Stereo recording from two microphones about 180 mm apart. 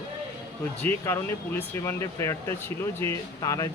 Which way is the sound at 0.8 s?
10° left (ahead or behind).